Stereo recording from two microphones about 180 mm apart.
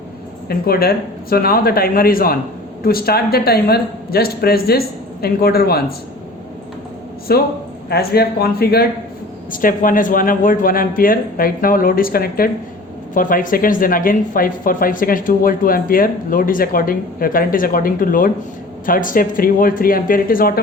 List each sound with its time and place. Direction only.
0.4 s speech: 55° left (ahead or behind)
7.3 s speech: 60° left (ahead or behind)
9.5 s speech: 50° left (ahead or behind)